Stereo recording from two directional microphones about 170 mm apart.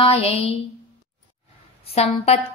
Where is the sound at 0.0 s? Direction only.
35° left (ahead or behind).